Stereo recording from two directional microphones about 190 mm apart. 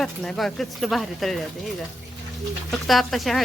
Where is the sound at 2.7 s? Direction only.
Centre (ahead or behind).